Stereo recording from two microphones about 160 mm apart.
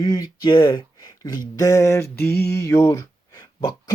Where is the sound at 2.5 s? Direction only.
20° left (ahead or behind).